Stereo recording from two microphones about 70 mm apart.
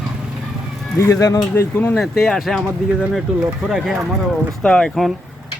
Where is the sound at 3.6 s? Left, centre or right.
Centre.